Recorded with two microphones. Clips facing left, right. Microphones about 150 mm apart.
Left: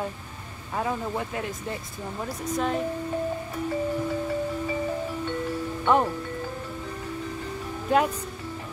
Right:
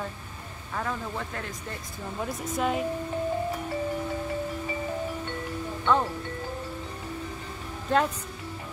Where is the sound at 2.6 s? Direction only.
5° right (ahead or behind).